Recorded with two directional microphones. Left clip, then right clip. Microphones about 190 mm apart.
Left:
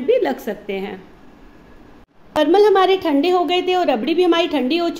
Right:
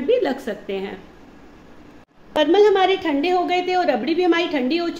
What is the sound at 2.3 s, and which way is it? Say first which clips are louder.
A woman's voice: left 2 dB; 25° left (ahead or behind).